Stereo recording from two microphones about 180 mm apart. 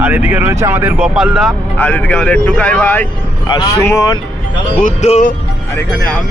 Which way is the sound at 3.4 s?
25° left (ahead or behind).